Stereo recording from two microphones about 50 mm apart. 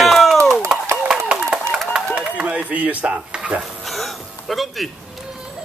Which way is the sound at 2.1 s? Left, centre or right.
Right.